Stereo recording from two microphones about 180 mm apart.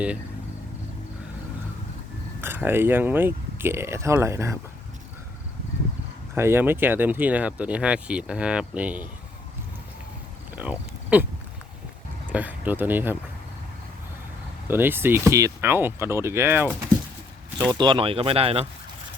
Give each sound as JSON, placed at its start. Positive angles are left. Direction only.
{"t": 2.4, "sound": "speech", "side_deg": -10}
{"t": 6.3, "sound": "speech", "side_deg": -15}
{"t": 10.5, "sound": "speech", "side_deg": -10}
{"t": 12.3, "sound": "speech", "side_deg": -10}
{"t": 14.7, "sound": "speech", "side_deg": -10}
{"t": 17.7, "sound": "speech", "side_deg": -25}